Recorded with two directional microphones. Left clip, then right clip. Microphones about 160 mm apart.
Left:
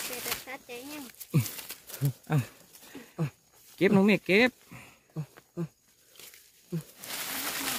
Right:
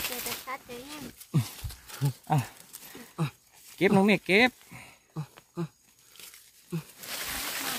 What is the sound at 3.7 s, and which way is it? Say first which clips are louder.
Speech: right 1 dB; centre (ahead or behind).